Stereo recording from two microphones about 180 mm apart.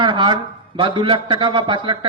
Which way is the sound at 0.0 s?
25° right (ahead or behind).